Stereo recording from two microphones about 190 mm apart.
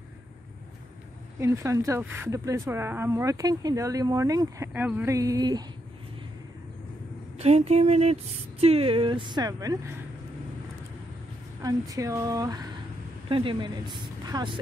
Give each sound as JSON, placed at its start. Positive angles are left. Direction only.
{"t": 1.4, "sound": "speech", "side_deg": -15}
{"t": 7.3, "sound": "speech", "side_deg": -35}
{"t": 11.6, "sound": "speech", "side_deg": -15}